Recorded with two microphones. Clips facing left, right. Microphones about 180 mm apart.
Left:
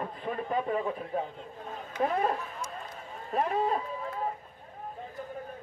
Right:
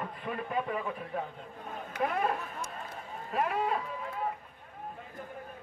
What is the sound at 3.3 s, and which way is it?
Speech, 35° left (ahead or behind).